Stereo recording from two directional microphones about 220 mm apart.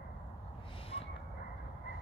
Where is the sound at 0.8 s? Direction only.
25° left (ahead or behind).